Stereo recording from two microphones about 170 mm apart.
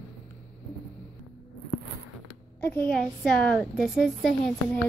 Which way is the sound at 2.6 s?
10° left (ahead or behind).